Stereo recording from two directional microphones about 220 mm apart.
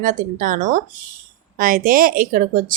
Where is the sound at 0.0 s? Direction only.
35° right (ahead or behind).